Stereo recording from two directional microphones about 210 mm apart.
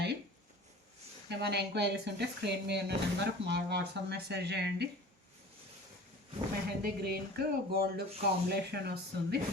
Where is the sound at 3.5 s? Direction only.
55° right (ahead or behind).